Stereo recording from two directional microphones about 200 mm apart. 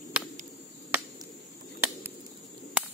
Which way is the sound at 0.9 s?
10° right (ahead or behind).